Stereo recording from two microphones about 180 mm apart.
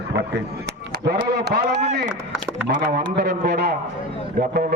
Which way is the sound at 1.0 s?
65° right (ahead or behind).